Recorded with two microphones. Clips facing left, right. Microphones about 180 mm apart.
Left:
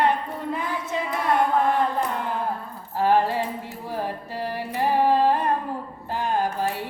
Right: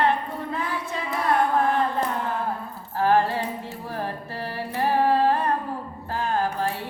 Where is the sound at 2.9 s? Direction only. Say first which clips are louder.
Even; 15° left (ahead or behind).